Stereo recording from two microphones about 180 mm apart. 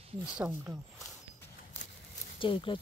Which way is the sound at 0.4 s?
10° right (ahead or behind).